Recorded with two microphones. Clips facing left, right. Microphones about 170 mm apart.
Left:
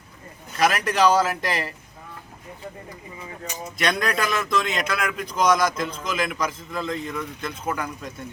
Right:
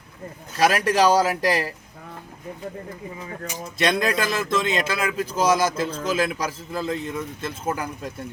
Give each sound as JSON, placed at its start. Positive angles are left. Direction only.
{"t": 0.6, "sound": "a man's voice", "side_deg": -35}
{"t": 3.8, "sound": "a man's voice", "side_deg": -25}